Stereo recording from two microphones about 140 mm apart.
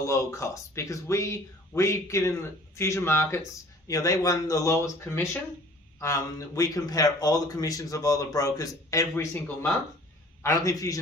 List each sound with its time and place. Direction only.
0.0 s speech: 20° left (ahead or behind)